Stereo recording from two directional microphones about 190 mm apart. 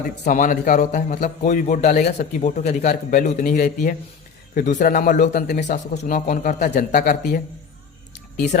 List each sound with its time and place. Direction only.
0.3 s a man's voice: 45° left (ahead or behind)
1.9 s a man's voice: 50° left (ahead or behind)
2.1 s a man's voice: 35° left (ahead or behind)